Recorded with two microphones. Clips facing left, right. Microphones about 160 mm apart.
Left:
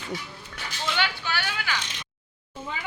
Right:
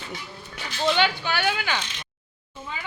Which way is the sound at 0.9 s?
20° right (ahead or behind).